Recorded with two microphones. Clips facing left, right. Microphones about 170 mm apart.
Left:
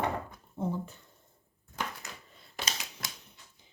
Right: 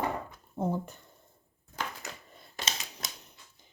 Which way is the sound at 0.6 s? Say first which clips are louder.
Right 2 dB; 45° right (ahead or behind).